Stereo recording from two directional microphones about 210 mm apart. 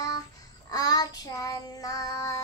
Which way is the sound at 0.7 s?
20° left (ahead or behind).